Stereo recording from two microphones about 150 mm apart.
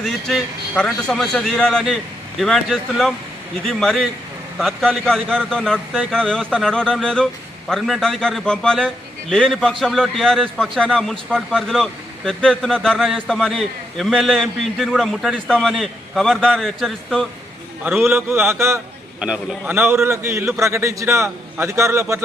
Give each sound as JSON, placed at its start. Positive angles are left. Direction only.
{"t": 0.0, "sound": "a man's voice", "side_deg": 5}
{"t": 17.8, "sound": "a man's voice", "side_deg": -15}
{"t": 19.2, "sound": "a man's voice", "side_deg": -5}